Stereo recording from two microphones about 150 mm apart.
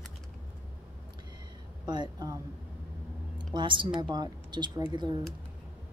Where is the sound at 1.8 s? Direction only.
30° right (ahead or behind).